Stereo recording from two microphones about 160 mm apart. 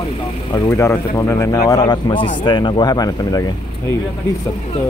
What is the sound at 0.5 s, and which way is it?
Speech, 20° left (ahead or behind).